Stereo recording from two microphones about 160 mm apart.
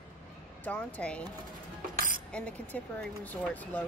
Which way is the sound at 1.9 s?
60° right (ahead or behind).